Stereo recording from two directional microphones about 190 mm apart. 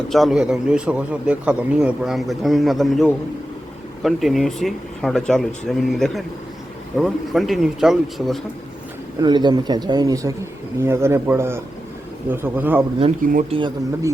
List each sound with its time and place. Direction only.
0.1 s a man's voice: centre (ahead or behind)
9.2 s speech: 25° right (ahead or behind)
13.5 s speech: 25° right (ahead or behind)